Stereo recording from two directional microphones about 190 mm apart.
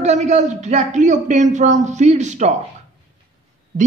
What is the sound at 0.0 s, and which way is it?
Speech, 35° right (ahead or behind).